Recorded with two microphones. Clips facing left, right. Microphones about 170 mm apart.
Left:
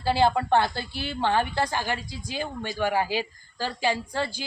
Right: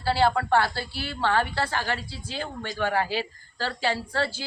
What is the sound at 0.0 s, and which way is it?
A woman's voice, 20° left (ahead or behind).